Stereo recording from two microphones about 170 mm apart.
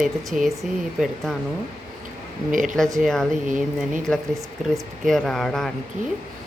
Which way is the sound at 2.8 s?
5° left (ahead or behind).